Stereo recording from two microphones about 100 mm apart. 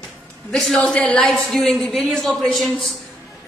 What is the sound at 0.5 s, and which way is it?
A woman's voice, 10° left (ahead or behind).